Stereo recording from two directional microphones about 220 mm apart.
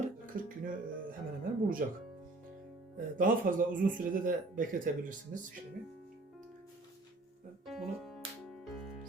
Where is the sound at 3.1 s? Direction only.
35° right (ahead or behind).